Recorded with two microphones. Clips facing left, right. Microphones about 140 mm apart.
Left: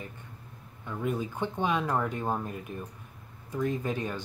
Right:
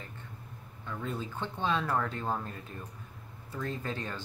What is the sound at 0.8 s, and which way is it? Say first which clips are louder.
Speech: left 5 dB; 15° left (ahead or behind).